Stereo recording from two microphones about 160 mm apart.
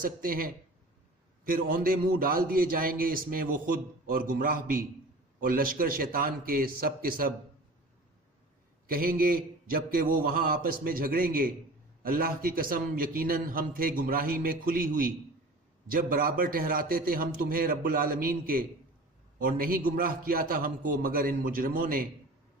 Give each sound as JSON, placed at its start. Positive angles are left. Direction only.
{"t": 0.0, "sound": "a man's voice", "side_deg": -65}
{"t": 8.9, "sound": "a man's voice", "side_deg": -65}